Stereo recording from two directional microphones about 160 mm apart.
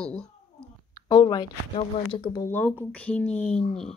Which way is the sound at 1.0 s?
25° left (ahead or behind).